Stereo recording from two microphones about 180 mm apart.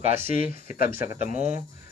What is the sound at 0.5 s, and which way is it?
Speech, 50° left (ahead or behind).